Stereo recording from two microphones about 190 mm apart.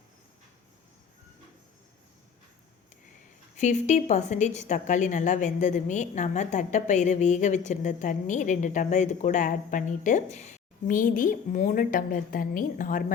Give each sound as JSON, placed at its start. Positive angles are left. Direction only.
{"t": 3.6, "sound": "a woman's voice", "side_deg": 40}